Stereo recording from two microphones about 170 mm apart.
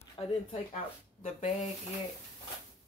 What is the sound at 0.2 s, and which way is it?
Speech, 20° left (ahead or behind).